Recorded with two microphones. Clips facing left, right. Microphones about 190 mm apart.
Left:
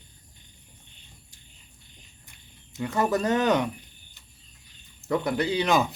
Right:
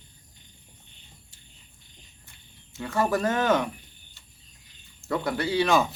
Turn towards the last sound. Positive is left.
turn(degrees=20)  # may be behind; listen again after turning